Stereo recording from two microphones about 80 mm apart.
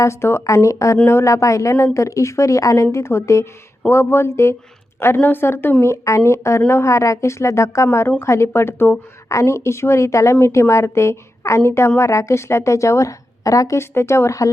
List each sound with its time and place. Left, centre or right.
0.0 s a woman's voice: left
5.8 s a woman's voice: left